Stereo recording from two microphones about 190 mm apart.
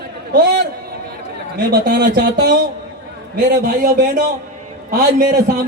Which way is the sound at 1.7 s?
50° right (ahead or behind).